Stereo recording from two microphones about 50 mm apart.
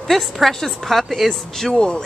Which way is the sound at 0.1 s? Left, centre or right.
Centre.